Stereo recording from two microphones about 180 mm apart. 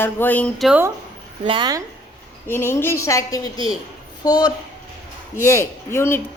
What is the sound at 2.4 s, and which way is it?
Speech, 15° left (ahead or behind).